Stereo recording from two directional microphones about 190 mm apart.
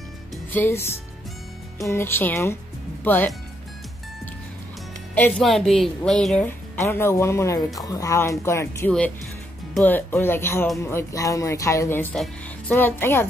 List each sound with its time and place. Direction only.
0.5 s a woman's voice: 10° left (ahead or behind)
5.1 s a woman's voice: 5° left (ahead or behind)